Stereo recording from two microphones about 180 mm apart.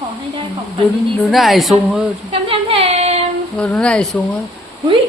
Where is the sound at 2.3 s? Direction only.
35° right (ahead or behind).